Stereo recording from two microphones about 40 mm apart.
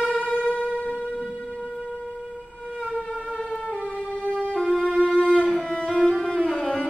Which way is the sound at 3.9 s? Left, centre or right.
Left.